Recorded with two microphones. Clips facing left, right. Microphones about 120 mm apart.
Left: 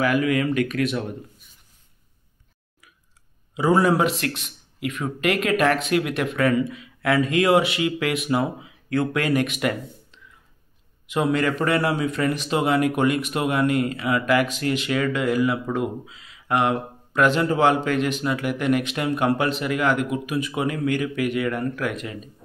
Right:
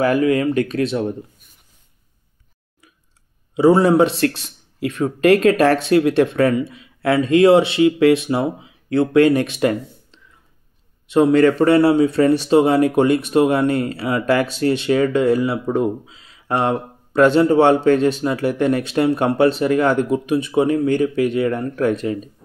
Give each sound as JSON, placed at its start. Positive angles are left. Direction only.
{"t": 0.0, "sound": "speech", "side_deg": -35}
{"t": 3.5, "sound": "a man's voice", "side_deg": -30}